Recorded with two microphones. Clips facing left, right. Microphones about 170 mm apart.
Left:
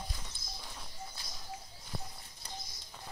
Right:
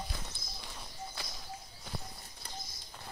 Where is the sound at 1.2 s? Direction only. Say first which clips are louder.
Right 6 dB; 70° right (ahead or behind).